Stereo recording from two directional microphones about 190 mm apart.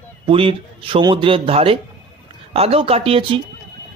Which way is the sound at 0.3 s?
30° right (ahead or behind).